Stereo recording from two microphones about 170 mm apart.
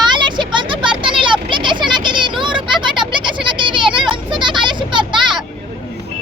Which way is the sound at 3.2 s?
30° right (ahead or behind).